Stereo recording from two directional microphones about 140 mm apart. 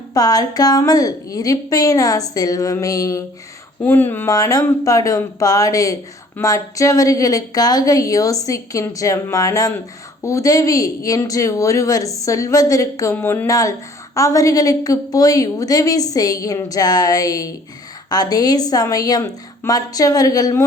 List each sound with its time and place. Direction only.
0.1 s speech: 30° left (ahead or behind)